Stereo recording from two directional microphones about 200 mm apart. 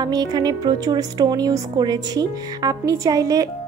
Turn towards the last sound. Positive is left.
turn(degrees=-15)  # may be behind; listen again after turning